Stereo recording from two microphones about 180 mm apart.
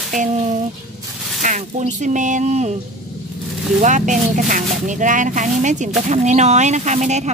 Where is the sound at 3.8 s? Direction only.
45° right (ahead or behind).